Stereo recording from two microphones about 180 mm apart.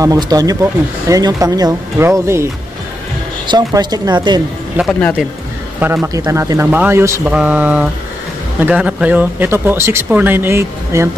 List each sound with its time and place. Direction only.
0.0 s speech: 20° right (ahead or behind)
3.4 s speech: 20° right (ahead or behind)
4.7 s a man's voice: centre (ahead or behind)